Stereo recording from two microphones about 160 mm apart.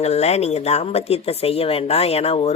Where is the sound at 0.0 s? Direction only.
40° left (ahead or behind).